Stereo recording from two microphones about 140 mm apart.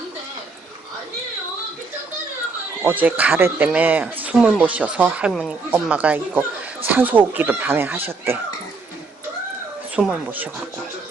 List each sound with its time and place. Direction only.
2.8 s speech: 10° right (ahead or behind)
5.3 s speech: centre (ahead or behind)
5.7 s speech: 10° right (ahead or behind)
9.9 s speech: 10° right (ahead or behind)